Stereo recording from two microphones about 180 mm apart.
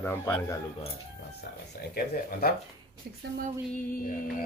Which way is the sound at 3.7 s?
50° left (ahead or behind).